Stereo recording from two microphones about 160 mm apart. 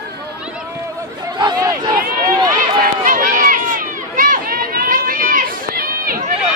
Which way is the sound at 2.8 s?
60° right (ahead or behind).